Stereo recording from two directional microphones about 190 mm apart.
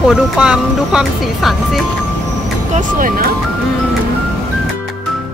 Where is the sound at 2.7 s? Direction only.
45° right (ahead or behind).